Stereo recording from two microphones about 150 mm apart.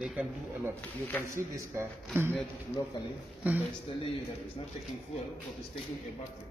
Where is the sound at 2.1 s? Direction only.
15° right (ahead or behind).